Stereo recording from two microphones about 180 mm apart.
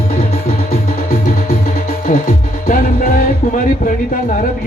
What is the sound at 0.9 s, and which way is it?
Music, 50° left (ahead or behind).